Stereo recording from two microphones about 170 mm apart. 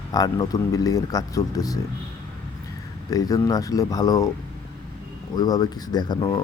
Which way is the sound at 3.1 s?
20° left (ahead or behind).